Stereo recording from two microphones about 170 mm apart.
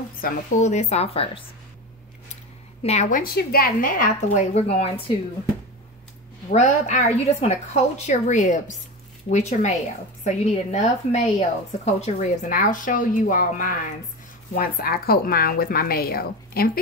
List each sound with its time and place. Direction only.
0.2 s a woman's voice: 45° left (ahead or behind)
2.8 s a woman's voice: 40° left (ahead or behind)
3.2 s speech: 60° left (ahead or behind)
4.6 s a woman's voice: 35° left (ahead or behind)
6.5 s a woman's voice: 45° left (ahead or behind); by 16.8 s 60° left (ahead or behind)